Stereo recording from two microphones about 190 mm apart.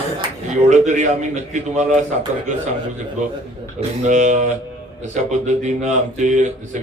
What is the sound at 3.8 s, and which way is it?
Speech, 40° right (ahead or behind).